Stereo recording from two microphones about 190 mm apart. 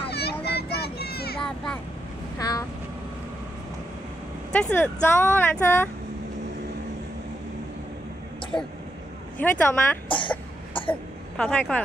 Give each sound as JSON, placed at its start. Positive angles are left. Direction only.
{"t": 0.1, "sound": "children playing", "side_deg": 60}
{"t": 1.4, "sound": "vehicle", "side_deg": 5}
{"t": 2.3, "sound": "vehicle", "side_deg": 20}
{"t": 4.5, "sound": "speech", "side_deg": 5}
{"t": 8.5, "sound": "speech", "side_deg": 25}
{"t": 9.4, "sound": "speech", "side_deg": 10}
{"t": 10.0, "sound": "cough", "side_deg": 25}
{"t": 11.3, "sound": "speech", "side_deg": 5}